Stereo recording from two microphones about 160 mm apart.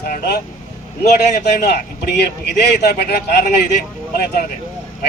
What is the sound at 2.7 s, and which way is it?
Speech, 85° left.